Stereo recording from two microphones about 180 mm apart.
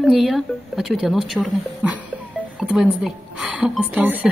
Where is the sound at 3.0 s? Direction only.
Centre (ahead or behind).